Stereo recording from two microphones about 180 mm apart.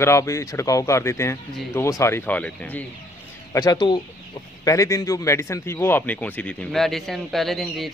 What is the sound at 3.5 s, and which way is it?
Speech, 20° left (ahead or behind).